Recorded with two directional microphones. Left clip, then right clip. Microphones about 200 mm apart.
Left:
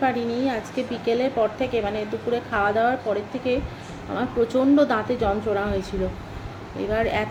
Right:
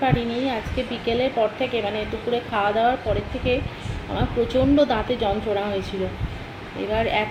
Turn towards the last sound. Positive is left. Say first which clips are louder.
# right 1 dB
turn(degrees=5)  # may be behind; listen again after turning